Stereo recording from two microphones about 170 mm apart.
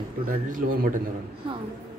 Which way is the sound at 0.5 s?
55° right (ahead or behind).